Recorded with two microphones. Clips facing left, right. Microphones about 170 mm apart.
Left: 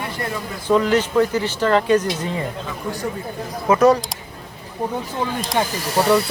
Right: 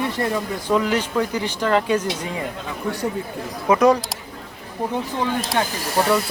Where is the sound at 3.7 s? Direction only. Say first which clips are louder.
Left 1 dB; 10° right (ahead or behind).